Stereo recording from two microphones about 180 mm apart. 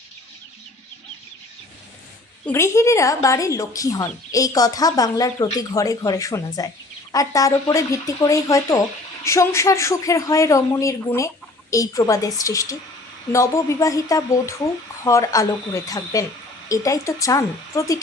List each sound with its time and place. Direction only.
2.5 s speech: 15° left (ahead or behind)